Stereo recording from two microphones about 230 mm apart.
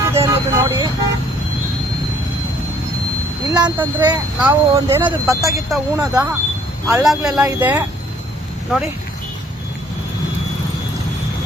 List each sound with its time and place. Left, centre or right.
0.0 s vehicle: centre
3.5 s speech: centre